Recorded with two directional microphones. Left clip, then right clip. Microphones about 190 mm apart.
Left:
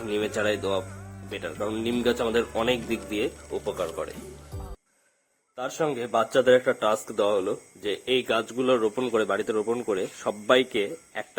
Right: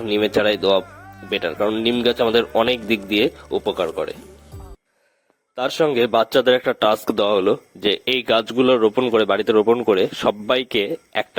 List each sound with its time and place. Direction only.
0.0 s a man's voice: 35° right (ahead or behind)
5.5 s a man's voice: 35° right (ahead or behind)